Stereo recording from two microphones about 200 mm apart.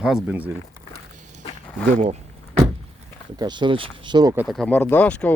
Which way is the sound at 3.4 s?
20° right (ahead or behind).